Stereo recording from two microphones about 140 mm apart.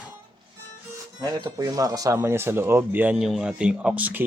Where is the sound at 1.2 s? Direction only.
25° right (ahead or behind).